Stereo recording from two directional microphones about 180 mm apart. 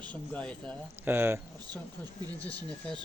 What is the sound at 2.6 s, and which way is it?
Speech, 5° left (ahead or behind).